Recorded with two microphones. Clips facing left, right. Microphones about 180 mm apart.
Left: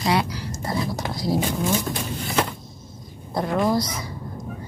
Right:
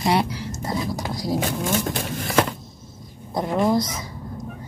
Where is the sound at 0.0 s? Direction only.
25° right (ahead or behind).